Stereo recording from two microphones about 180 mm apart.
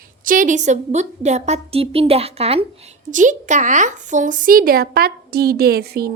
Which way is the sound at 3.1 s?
45° right (ahead or behind).